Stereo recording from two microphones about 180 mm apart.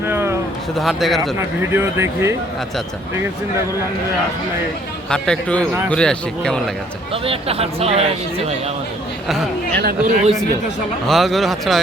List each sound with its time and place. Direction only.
0.0 s a sound: 15° right (ahead or behind)
0.8 s speech: centre (ahead or behind)
1.2 s speech: 15° right (ahead or behind)
5.0 s speech: 5° left (ahead or behind)
7.1 s speech: 30° right (ahead or behind)
9.7 s speech: 60° right (ahead or behind)
11.0 s speech: centre (ahead or behind)